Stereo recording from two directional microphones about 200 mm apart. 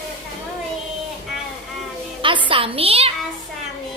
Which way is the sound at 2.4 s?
25° right (ahead or behind).